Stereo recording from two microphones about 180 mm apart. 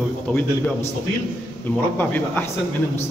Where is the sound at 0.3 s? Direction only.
10° left (ahead or behind).